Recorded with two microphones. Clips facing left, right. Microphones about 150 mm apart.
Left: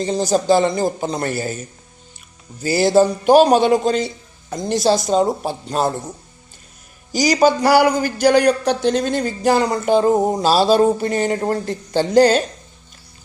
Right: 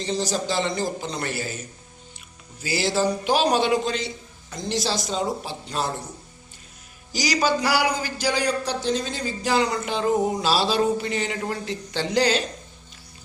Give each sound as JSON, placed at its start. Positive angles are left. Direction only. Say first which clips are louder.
{"t": 0.0, "sound": "speech", "louder": "left 7 dB", "side_deg": 45}
{"t": 2.6, "sound": "speech", "louder": "left 9 dB", "side_deg": 50}
{"t": 7.1, "sound": "speech", "louder": "left 8 dB", "side_deg": 45}